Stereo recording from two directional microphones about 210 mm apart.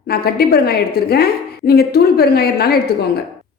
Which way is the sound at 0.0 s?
50° left (ahead or behind).